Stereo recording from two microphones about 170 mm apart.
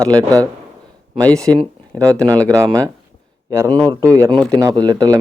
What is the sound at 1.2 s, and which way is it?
Speech, 10° left (ahead or behind).